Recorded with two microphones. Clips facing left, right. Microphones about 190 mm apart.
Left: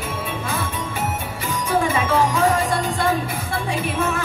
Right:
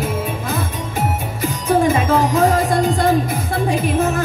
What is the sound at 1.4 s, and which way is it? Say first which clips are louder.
Music: right 6 dB; 40° right (ahead or behind).